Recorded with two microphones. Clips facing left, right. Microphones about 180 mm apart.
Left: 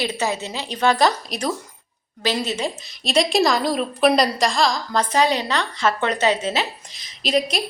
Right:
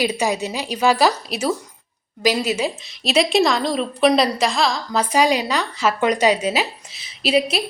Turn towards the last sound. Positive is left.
turn(degrees=-5)  # may be behind; listen again after turning